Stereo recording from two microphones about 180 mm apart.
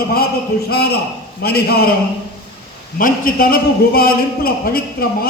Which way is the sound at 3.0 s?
50° left (ahead or behind).